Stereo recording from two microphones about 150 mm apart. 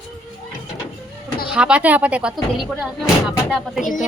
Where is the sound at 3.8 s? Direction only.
60° left (ahead or behind).